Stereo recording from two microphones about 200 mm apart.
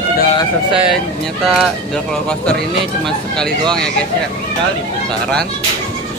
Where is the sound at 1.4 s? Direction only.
Centre (ahead or behind).